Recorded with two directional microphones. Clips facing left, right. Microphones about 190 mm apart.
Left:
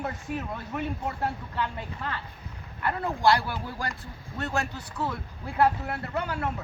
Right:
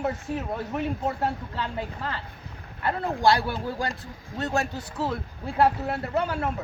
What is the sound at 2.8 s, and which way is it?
Speech, 30° right (ahead or behind).